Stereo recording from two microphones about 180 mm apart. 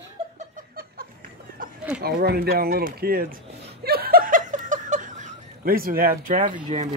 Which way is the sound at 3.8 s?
60° right (ahead or behind).